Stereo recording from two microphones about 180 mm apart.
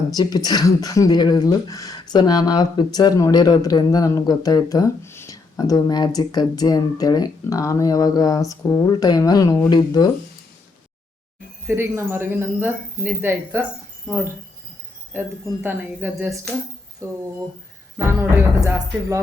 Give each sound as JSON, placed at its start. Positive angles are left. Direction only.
{"t": 0.1, "sound": "speech", "side_deg": 20}
{"t": 11.6, "sound": "speech", "side_deg": -15}
{"t": 15.1, "sound": "speech", "side_deg": -10}